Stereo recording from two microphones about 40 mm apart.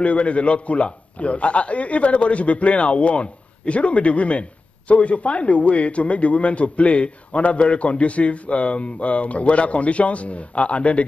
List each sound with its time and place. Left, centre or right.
0.0 s a man's voice: left